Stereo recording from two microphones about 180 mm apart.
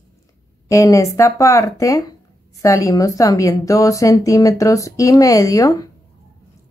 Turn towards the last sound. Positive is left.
turn(degrees=20)  # may be behind; listen again after turning